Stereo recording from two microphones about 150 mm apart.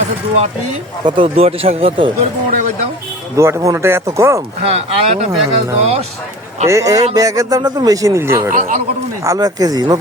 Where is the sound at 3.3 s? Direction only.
20° right (ahead or behind).